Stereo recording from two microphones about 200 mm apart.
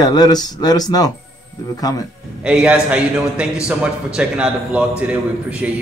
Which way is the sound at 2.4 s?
5° right (ahead or behind).